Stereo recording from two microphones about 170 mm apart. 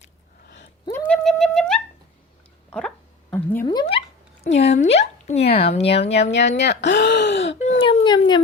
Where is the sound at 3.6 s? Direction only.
25° left (ahead or behind).